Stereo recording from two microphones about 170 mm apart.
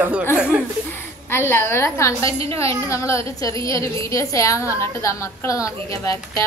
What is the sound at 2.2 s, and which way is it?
Speech, 35° right (ahead or behind).